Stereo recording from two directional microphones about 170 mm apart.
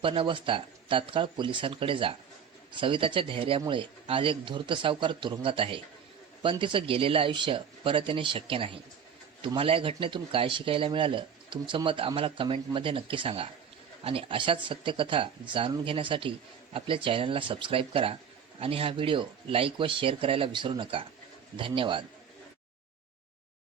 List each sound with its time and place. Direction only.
0.0 s speech: 30° right (ahead or behind)